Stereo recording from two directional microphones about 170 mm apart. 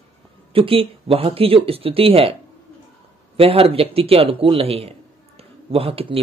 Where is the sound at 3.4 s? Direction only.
35° right (ahead or behind).